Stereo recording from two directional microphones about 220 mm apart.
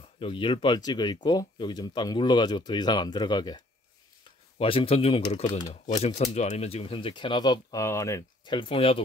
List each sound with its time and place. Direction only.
0.2 s speech: 25° left (ahead or behind)